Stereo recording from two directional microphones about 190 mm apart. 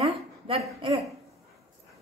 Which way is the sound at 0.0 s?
30° right (ahead or behind).